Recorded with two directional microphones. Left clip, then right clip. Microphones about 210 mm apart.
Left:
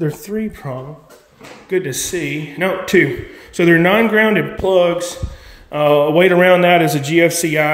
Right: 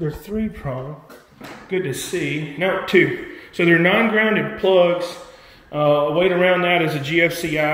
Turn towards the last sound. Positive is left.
turn(degrees=35)  # may be behind; listen again after turning